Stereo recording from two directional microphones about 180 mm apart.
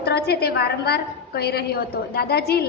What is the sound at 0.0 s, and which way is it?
A woman's voice, 65° left (ahead or behind).